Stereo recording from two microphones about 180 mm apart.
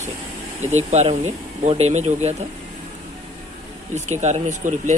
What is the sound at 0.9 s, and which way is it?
Speech, 40° right (ahead or behind).